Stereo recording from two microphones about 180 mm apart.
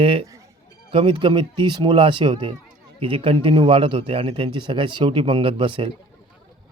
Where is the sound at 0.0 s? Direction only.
30° right (ahead or behind).